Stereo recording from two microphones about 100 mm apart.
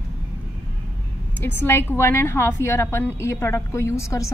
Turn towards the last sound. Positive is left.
turn(degrees=30)  # may be behind; listen again after turning